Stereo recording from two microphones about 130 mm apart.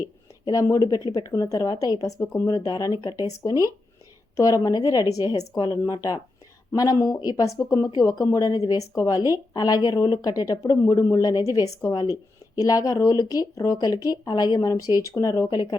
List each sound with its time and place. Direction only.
0.4 s speech: 25° left (ahead or behind)
2.5 s speech: 30° left (ahead or behind)
4.4 s speech: 25° left (ahead or behind)